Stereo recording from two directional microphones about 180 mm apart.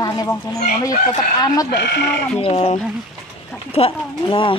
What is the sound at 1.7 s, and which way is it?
Speech, 70° left (ahead or behind).